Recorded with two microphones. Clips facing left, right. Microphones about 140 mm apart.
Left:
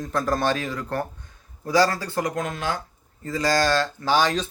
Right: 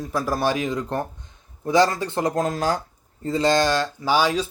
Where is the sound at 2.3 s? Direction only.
35° right (ahead or behind).